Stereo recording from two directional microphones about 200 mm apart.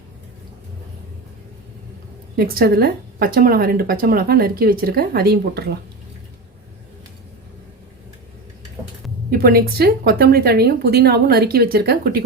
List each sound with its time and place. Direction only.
2.3 s speech: 50° right (ahead or behind)
9.3 s speech: 50° right (ahead or behind)